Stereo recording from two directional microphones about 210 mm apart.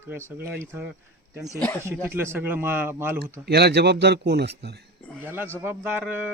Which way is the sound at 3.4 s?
50° right (ahead or behind).